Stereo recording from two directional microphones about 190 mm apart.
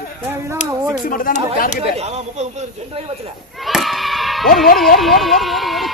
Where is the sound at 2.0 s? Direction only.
35° right (ahead or behind).